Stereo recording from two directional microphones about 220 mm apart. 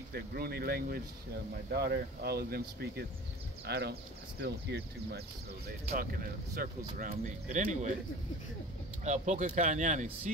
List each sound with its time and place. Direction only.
0.1 s speech: 45° right (ahead or behind)
6.5 s speech: 40° right (ahead or behind)
9.0 s speech: 30° right (ahead or behind)